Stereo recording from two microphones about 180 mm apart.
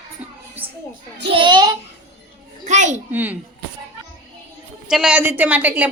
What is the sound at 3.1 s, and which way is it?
Speech, 10° right (ahead or behind).